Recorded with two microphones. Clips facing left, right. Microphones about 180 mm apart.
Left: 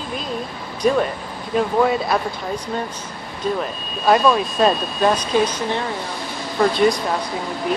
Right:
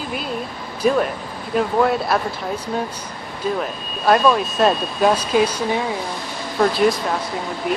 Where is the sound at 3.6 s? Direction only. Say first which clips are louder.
Even; centre (ahead or behind).